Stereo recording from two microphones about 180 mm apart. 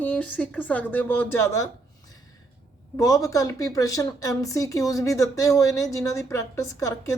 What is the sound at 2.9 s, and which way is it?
Speech, 20° left (ahead or behind).